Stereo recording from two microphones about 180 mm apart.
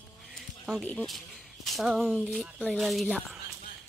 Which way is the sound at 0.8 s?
5° left (ahead or behind).